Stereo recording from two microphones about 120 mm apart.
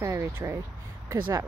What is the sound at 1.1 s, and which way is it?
Speech, 40° right (ahead or behind).